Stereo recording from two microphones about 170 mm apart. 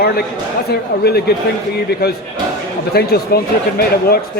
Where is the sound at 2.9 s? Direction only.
65° left (ahead or behind).